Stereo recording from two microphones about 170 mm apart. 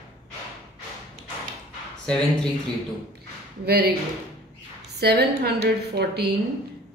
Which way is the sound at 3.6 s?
70° right (ahead or behind).